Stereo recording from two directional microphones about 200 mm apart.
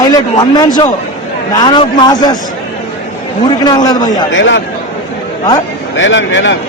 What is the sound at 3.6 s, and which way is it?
Speech, 20° left (ahead or behind).